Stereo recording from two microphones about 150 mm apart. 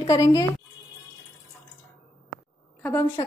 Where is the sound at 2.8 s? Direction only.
15° left (ahead or behind).